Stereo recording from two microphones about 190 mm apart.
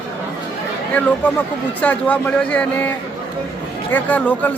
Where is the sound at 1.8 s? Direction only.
10° left (ahead or behind).